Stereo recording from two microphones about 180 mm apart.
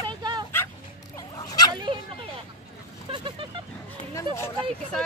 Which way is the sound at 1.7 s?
25° right (ahead or behind).